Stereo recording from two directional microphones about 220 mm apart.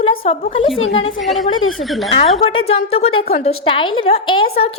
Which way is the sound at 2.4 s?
25° left (ahead or behind).